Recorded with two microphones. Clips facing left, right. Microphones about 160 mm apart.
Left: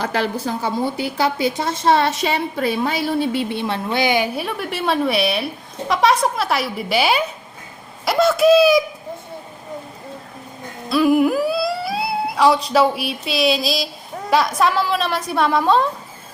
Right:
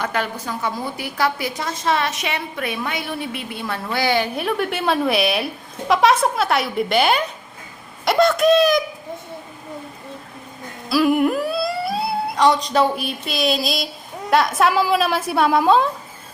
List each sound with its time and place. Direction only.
0.0 s a woman's voice: 35° left (ahead or behind); by 4.3 s 15° left (ahead or behind)
4.4 s a woman's voice: centre (ahead or behind)
10.8 s a woman's voice: centre (ahead or behind)